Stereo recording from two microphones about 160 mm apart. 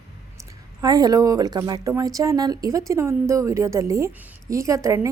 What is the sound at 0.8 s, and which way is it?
A woman's voice, 25° right (ahead or behind).